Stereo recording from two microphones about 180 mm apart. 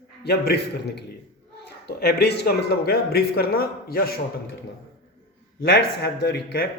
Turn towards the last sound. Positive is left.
turn(degrees=70)  # may be behind; listen again after turning